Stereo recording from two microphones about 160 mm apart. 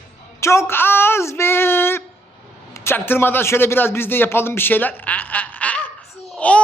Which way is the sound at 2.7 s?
15° left (ahead or behind).